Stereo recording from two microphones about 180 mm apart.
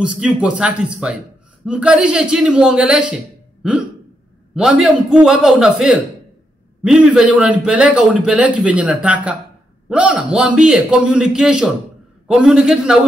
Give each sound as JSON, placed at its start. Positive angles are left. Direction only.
{"t": 0.2, "sound": "a man's voice", "side_deg": -5}
{"t": 4.6, "sound": "a man's voice", "side_deg": -5}